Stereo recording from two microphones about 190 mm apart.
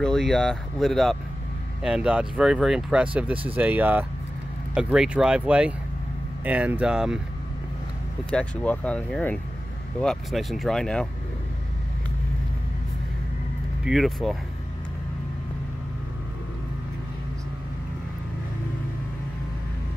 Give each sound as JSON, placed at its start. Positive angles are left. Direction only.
{"t": 0.0, "sound": "speech", "side_deg": 5}
{"t": 8.3, "sound": "speech", "side_deg": 5}
{"t": 13.8, "sound": "speech", "side_deg": 0}